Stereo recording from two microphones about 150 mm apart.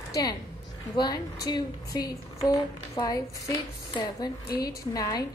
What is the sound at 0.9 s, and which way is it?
A woman's voice, 25° left (ahead or behind).